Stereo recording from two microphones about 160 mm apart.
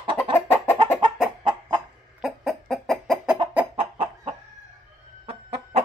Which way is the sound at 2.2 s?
Centre (ahead or behind).